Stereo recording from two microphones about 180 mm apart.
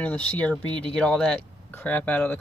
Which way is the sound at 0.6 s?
25° right (ahead or behind).